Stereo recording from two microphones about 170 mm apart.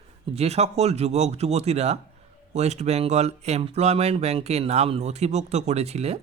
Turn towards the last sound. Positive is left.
turn(degrees=-40)  # may be behind; listen again after turning